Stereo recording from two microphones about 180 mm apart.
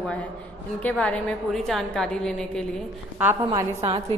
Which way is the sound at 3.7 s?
35° right (ahead or behind).